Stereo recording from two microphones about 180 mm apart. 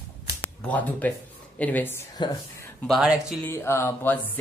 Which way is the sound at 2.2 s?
25° left (ahead or behind).